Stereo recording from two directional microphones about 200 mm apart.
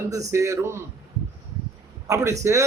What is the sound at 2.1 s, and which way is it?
Speech, 15° right (ahead or behind).